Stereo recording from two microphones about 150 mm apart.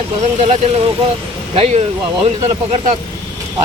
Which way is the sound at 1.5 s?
40° right (ahead or behind).